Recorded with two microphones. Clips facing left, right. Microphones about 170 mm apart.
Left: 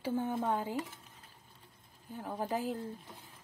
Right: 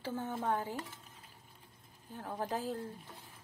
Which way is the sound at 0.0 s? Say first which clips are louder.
Left 4 dB; 15° left (ahead or behind).